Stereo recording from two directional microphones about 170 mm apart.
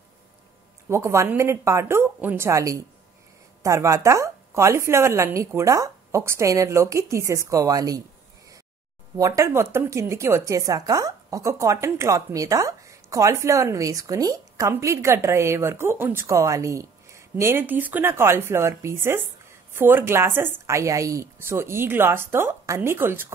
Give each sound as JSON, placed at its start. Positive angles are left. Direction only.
{"t": 0.8, "sound": "speech", "side_deg": -15}
{"t": 9.1, "sound": "speech", "side_deg": -20}